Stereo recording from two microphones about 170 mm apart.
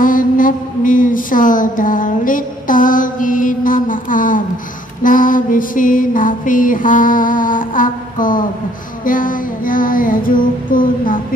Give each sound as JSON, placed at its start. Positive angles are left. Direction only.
{"t": 0.0, "sound": "mantra", "side_deg": 55}